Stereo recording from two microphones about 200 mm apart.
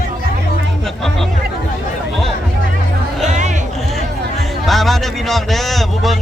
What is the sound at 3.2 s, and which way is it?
Music, 35° right (ahead or behind).